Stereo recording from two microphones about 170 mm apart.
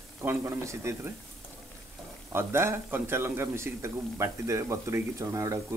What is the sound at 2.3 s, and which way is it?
A man's voice, 15° right (ahead or behind).